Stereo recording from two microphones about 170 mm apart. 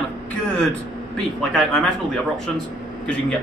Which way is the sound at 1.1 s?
5° left (ahead or behind).